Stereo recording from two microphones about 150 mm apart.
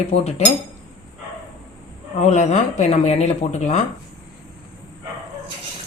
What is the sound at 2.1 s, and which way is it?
A woman's voice, 50° left (ahead or behind).